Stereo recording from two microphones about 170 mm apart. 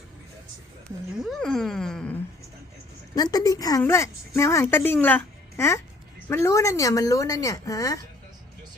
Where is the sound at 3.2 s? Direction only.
20° left (ahead or behind).